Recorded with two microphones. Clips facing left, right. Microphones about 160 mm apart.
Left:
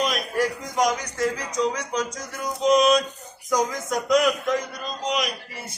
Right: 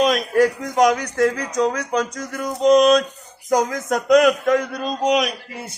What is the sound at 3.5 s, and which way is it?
A man's voice, 60° right (ahead or behind).